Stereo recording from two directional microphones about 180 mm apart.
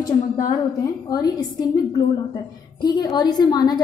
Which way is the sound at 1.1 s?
20° left (ahead or behind).